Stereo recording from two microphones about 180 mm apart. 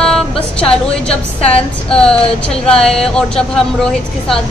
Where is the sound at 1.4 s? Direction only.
35° left (ahead or behind).